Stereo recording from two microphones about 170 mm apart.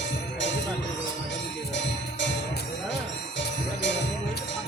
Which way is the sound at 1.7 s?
90° left.